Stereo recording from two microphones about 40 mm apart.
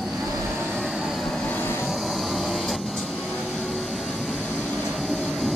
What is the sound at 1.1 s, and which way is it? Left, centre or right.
Vehicle, centre.